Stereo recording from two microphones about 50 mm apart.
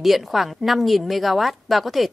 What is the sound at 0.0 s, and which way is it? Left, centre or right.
A woman's voice, centre.